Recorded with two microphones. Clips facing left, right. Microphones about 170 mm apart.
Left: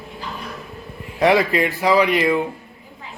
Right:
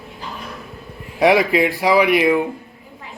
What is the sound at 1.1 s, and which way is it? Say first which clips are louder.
Speech: right 2 dB; 15° right (ahead or behind).